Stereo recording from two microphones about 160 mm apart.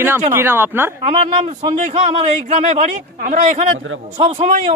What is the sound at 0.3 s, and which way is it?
Speech, 15° right (ahead or behind).